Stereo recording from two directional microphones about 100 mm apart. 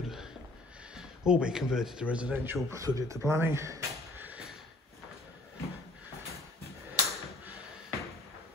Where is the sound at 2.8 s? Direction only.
35° right (ahead or behind).